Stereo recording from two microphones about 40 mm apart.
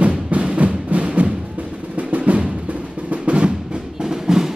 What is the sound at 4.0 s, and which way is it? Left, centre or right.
Music, centre.